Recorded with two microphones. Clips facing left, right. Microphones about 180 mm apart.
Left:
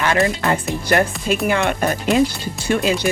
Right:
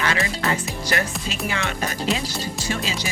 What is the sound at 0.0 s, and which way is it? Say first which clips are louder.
Speech: left 6 dB; 50° left (ahead or behind).